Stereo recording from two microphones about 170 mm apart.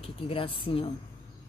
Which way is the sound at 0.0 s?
35° left (ahead or behind).